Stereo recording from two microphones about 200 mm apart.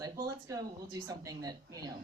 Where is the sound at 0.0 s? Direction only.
15° right (ahead or behind).